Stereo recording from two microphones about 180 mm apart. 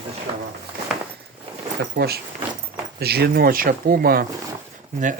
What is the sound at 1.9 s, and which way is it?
Speech, 60° right (ahead or behind).